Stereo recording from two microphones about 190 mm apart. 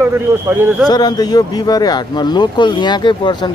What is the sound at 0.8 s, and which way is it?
Speech, 20° left (ahead or behind).